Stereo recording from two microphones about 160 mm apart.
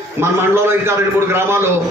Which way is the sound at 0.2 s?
15° right (ahead or behind).